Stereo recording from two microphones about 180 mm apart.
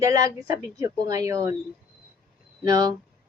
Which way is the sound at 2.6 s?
25° right (ahead or behind).